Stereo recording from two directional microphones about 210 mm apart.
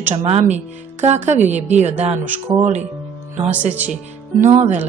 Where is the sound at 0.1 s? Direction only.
30° right (ahead or behind).